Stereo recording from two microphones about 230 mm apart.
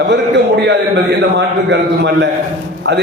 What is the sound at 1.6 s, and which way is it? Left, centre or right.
Speech, right.